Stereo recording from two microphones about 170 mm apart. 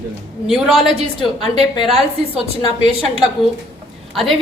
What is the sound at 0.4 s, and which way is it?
Speech, centre (ahead or behind).